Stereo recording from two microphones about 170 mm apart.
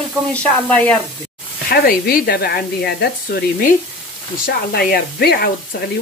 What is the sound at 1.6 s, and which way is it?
Speech, 60° left (ahead or behind).